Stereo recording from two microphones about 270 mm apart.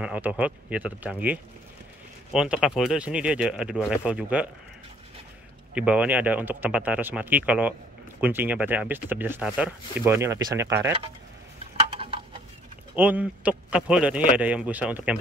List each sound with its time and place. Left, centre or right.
0.0 s a man's voice: centre
5.8 s a man's voice: centre
11.9 s a sound: centre
12.9 s a man's voice: centre